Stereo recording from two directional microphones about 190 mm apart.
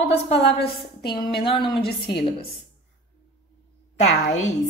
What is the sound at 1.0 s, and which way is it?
Speech, 25° left (ahead or behind).